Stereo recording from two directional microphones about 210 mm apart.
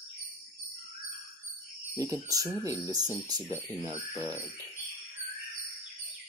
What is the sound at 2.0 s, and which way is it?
Speech, 15° right (ahead or behind).